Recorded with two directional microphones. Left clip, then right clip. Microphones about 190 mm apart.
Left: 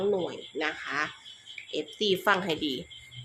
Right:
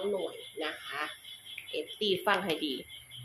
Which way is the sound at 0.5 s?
40° left (ahead or behind).